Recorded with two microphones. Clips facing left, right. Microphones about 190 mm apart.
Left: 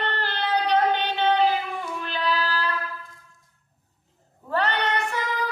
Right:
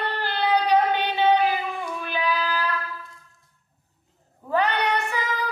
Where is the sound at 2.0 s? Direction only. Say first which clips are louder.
Even; 15° right (ahead or behind).